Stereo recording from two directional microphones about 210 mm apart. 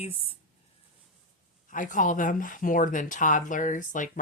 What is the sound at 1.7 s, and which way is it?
Speech, 40° left (ahead or behind).